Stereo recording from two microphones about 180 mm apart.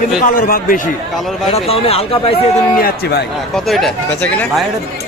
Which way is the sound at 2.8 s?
60° left (ahead or behind).